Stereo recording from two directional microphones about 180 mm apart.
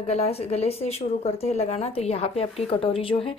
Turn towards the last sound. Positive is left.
turn(degrees=30)  # may be behind; listen again after turning